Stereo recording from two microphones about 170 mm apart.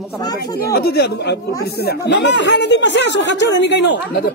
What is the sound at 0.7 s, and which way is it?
Speech, 65° left (ahead or behind).